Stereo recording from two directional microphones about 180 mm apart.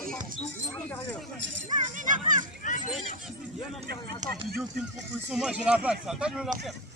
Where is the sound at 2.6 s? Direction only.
45° left (ahead or behind).